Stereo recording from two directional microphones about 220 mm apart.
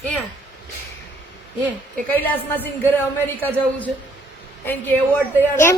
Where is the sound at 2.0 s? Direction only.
10° left (ahead or behind).